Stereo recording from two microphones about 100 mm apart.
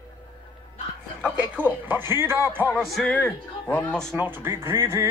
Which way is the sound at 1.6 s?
20° right (ahead or behind).